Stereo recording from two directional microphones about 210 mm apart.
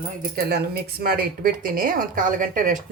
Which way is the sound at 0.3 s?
50° right (ahead or behind).